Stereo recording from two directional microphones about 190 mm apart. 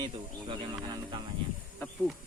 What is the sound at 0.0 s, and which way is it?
Speech, 25° right (ahead or behind).